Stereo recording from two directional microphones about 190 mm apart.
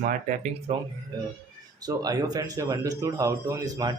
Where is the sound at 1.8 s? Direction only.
20° right (ahead or behind).